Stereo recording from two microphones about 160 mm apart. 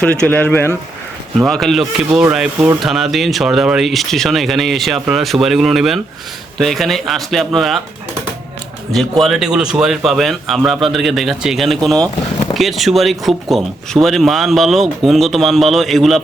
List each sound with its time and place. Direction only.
0.0 s speech: 10° left (ahead or behind)
1.4 s speech: centre (ahead or behind)
8.9 s speech: centre (ahead or behind)